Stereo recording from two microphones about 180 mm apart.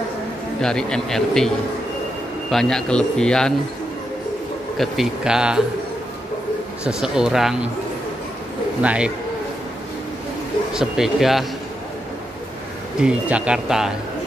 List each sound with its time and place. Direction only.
0.6 s speech: 5° left (ahead or behind)
2.5 s speech: 5° left (ahead or behind)
4.7 s speech: 5° right (ahead or behind)
6.8 s speech: 5° right (ahead or behind)
8.8 s speech: 5° right (ahead or behind)
10.7 s speech: centre (ahead or behind)
13.0 s speech: 5° right (ahead or behind)